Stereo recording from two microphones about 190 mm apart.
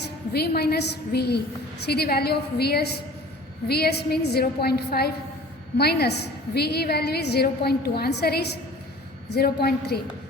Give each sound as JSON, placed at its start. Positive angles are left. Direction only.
{"t": 0.0, "sound": "a woman's voice", "side_deg": 60}